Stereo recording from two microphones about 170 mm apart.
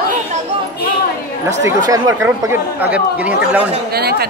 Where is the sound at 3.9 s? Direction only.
70° right (ahead or behind).